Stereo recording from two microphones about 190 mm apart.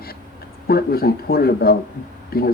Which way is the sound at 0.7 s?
55° left (ahead or behind).